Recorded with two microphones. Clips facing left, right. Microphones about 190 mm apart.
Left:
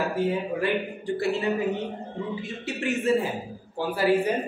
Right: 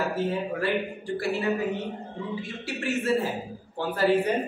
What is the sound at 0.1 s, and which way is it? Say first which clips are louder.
Speech: left 2 dB; 15° left (ahead or behind).